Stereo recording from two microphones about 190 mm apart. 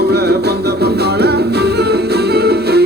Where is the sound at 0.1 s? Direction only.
60° right (ahead or behind).